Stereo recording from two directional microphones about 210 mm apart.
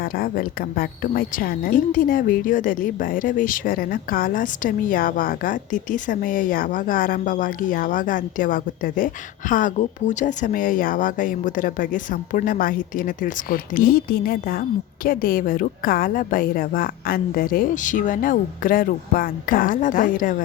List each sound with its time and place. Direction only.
0.0 s a woman's voice: 45° left (ahead or behind)